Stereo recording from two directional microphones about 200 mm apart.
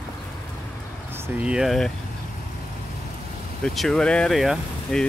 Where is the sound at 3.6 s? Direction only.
Centre (ahead or behind).